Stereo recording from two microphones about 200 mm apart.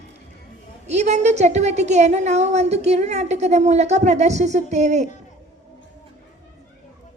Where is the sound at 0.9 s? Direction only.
35° right (ahead or behind).